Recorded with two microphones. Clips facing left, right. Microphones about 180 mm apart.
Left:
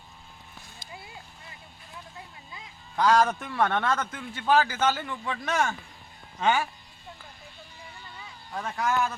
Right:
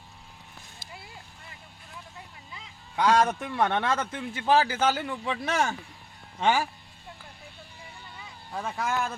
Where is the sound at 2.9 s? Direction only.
5° right (ahead or behind).